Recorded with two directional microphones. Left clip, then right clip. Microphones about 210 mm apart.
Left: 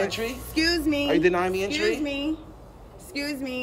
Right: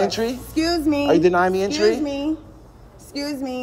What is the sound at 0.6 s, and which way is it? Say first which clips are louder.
Speech: right 3 dB; centre (ahead or behind).